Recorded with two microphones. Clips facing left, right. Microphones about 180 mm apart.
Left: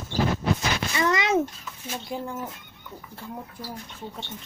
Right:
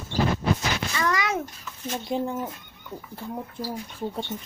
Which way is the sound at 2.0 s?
20° right (ahead or behind).